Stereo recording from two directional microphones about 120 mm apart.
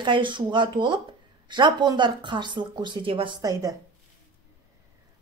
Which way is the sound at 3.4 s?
30° right (ahead or behind).